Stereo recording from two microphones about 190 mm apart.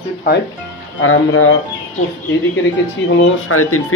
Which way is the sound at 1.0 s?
90° left.